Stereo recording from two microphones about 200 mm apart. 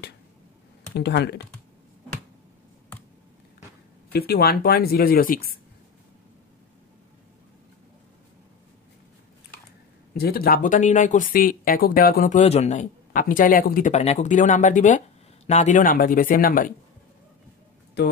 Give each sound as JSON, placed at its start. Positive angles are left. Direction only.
{"t": 0.9, "sound": "speech", "side_deg": 55}
{"t": 4.1, "sound": "speech", "side_deg": 50}
{"t": 10.1, "sound": "speech", "side_deg": 50}
{"t": 18.0, "sound": "speech", "side_deg": 55}